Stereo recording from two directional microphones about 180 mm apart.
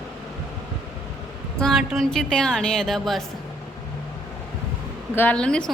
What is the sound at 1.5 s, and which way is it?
A woman's voice, centre (ahead or behind).